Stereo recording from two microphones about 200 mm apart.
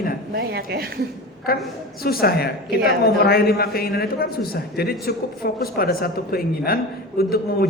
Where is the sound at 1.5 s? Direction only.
45° left (ahead or behind).